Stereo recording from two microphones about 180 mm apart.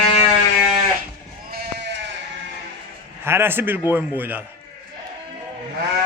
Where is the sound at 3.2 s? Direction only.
15° right (ahead or behind).